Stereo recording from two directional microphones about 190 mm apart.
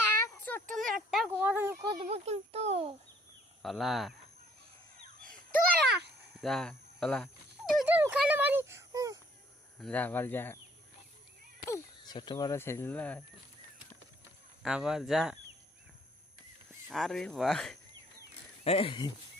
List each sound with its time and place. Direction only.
0.2 s a sound: 10° left (ahead or behind)
1.4 s speech: 10° right (ahead or behind)
1.8 s speech: 25° right (ahead or behind)
2.0 s a child's voice: 35° right (ahead or behind)
3.6 s speech: centre (ahead or behind)
6.4 s speech: 5° left (ahead or behind); by 9.1 s 15° right (ahead or behind)
9.8 s speech: 10° left (ahead or behind)
11.6 s speech: 20° left (ahead or behind)
14.6 s speech: 5° right (ahead or behind)
16.9 s speech: centre (ahead or behind)
18.6 s speech: 30° left (ahead or behind)